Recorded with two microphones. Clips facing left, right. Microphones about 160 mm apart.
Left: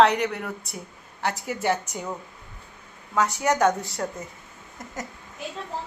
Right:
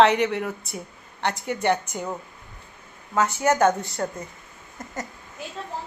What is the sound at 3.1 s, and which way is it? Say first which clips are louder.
Speech: right 2 dB; centre (ahead or behind).